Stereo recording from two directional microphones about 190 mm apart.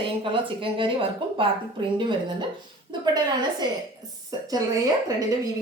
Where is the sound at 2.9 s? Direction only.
25° right (ahead or behind).